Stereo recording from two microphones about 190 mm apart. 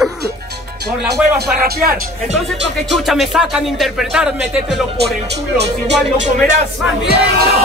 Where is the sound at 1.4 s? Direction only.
55° right (ahead or behind).